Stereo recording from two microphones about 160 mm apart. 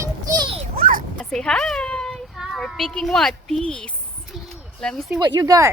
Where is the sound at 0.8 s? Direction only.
60° right (ahead or behind).